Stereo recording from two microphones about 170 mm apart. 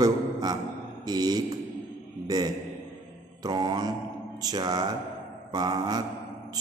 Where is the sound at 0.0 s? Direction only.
25° right (ahead or behind).